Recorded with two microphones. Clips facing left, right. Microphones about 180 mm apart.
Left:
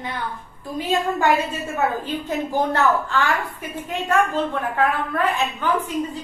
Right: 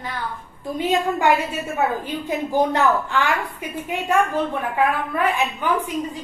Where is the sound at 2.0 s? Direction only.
10° right (ahead or behind).